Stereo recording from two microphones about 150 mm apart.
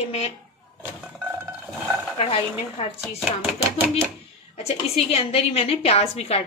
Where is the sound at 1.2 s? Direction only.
10° right (ahead or behind).